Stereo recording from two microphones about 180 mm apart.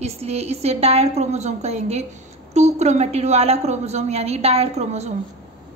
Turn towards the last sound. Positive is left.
turn(degrees=-35)  # may be behind; listen again after turning